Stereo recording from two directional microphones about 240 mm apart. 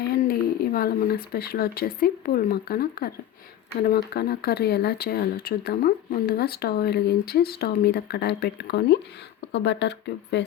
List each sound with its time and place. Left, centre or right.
0.3 s speech: left